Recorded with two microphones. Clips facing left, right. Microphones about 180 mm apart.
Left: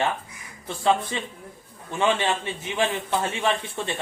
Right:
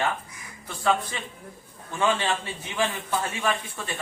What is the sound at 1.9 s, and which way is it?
Speech, 20° left (ahead or behind).